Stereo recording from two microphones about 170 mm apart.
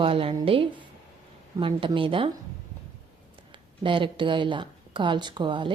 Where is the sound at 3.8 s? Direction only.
30° right (ahead or behind).